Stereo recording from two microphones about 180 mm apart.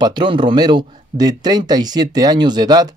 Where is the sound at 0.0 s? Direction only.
25° right (ahead or behind).